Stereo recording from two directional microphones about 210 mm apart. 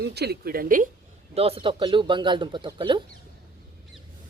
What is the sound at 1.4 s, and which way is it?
Speech, 25° right (ahead or behind).